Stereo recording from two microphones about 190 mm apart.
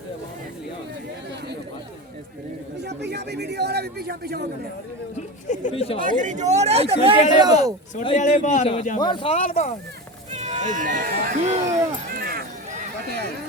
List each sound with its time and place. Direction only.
2.8 s a man's voice: 60° right (ahead or behind)
5.1 s speech: 40° left (ahead or behind)
6.0 s speech: 45° right (ahead or behind); by 7.5 s 25° right (ahead or behind)
8.2 s speech: 40° left (ahead or behind)
9.0 s speech: 25° left (ahead or behind)
10.3 s speech: 40° right (ahead or behind)
12.1 s a sound: 55° right (ahead or behind)